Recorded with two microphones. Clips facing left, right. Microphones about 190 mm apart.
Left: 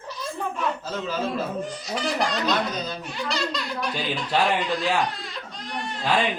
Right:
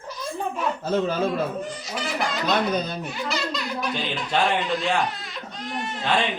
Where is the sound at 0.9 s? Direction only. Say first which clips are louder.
Right 6 dB; 55° right (ahead or behind).